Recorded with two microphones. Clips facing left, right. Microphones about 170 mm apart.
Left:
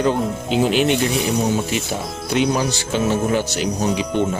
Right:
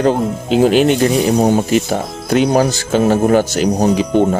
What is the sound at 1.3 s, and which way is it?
Speech, 60° right (ahead or behind).